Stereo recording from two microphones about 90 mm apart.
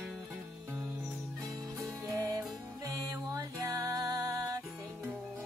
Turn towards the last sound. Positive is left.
turn(degrees=-40)  # may be behind; listen again after turning